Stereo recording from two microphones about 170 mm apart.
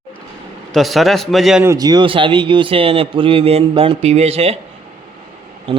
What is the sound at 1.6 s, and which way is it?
Speech, 20° right (ahead or behind).